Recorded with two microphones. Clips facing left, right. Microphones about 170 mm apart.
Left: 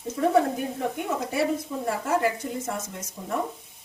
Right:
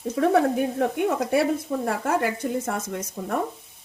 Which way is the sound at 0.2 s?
70° right (ahead or behind).